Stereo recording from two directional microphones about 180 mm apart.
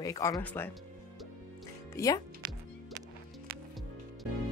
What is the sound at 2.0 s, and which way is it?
Speech, 15° left (ahead or behind).